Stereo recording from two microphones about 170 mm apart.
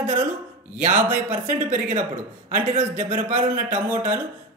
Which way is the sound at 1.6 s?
50° right (ahead or behind).